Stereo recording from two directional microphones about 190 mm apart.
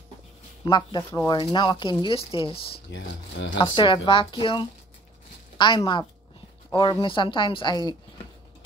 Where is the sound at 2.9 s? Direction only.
75° left (ahead or behind).